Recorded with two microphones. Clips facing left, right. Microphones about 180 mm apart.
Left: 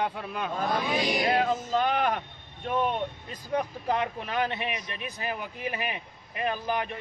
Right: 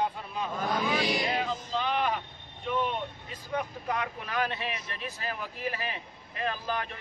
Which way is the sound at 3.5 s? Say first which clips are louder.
Left 4 dB; 30° left (ahead or behind).